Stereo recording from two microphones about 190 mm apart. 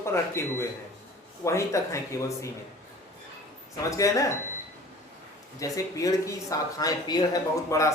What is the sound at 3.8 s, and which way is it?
Speech, 15° left (ahead or behind).